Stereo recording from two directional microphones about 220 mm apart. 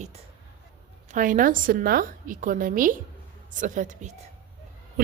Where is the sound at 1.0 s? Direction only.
35° right (ahead or behind).